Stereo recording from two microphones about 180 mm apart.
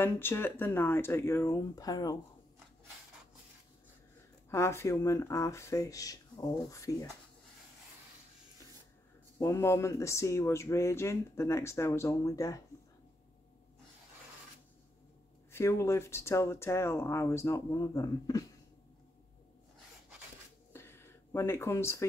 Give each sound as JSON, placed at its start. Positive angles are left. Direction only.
{"t": 0.0, "sound": "speech", "side_deg": 10}
{"t": 4.5, "sound": "speech", "side_deg": 15}
{"t": 9.4, "sound": "speech", "side_deg": 15}
{"t": 15.5, "sound": "speech", "side_deg": 15}
{"t": 20.7, "sound": "a sound", "side_deg": 15}